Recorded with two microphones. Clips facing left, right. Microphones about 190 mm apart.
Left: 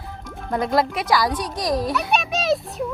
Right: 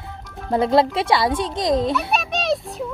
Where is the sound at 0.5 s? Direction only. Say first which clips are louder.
Right 4 dB; 25° right (ahead or behind).